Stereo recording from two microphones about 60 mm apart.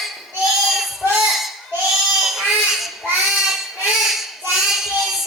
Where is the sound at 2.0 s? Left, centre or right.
Centre.